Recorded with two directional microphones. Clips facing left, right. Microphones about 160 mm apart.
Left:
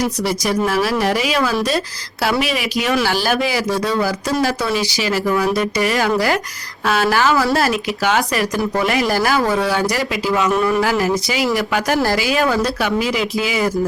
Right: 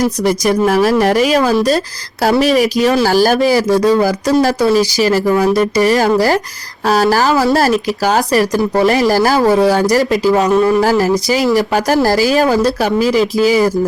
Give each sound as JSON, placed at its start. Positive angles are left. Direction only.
{"t": 0.0, "sound": "speech", "side_deg": -45}